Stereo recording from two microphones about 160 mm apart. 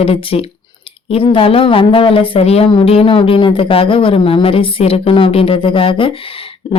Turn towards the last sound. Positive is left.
turn(degrees=35)  # may be behind; listen again after turning